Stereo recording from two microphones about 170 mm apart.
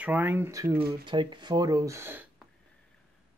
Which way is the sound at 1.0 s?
25° right (ahead or behind).